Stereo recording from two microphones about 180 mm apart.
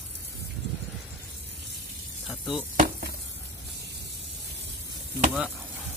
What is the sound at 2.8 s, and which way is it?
Stir, 55° right (ahead or behind).